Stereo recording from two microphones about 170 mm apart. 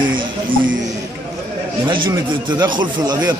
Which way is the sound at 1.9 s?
25° right (ahead or behind).